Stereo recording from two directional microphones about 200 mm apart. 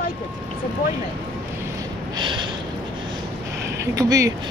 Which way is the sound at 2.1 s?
25° right (ahead or behind).